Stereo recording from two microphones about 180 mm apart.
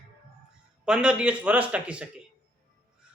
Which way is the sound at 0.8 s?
5° right (ahead or behind).